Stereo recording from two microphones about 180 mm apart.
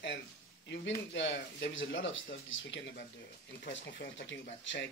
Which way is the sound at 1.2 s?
90° left.